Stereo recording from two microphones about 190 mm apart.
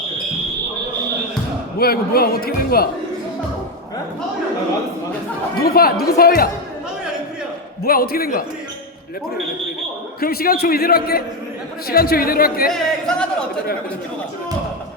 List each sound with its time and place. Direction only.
1.8 s speech: 55° left (ahead or behind)
5.5 s speech: 50° left (ahead or behind)
7.9 s speech: 50° left (ahead or behind)
10.2 s speech: 50° left (ahead or behind)
12.7 s a sound: 5° left (ahead or behind)